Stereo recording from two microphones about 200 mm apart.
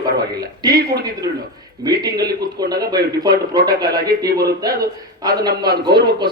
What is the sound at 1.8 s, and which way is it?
Speech, 20° right (ahead or behind).